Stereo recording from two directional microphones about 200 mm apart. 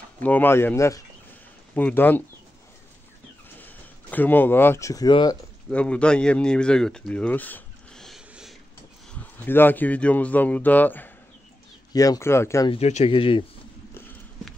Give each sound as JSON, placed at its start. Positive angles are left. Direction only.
{"t": 0.2, "sound": "speech", "side_deg": 10}
{"t": 3.5, "sound": "speech", "side_deg": 10}
{"t": 5.7, "sound": "speech", "side_deg": 5}
{"t": 12.7, "sound": "speech", "side_deg": 30}